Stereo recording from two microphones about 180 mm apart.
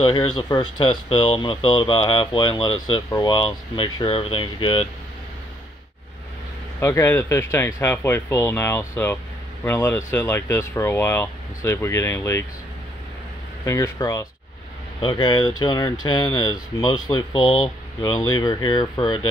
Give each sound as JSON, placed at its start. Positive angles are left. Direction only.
{"t": 0.0, "sound": "speech", "side_deg": 30}
{"t": 6.8, "sound": "speech", "side_deg": 15}
{"t": 13.7, "sound": "speech", "side_deg": 15}
{"t": 15.0, "sound": "speech", "side_deg": 25}
{"t": 18.4, "sound": "speech", "side_deg": 25}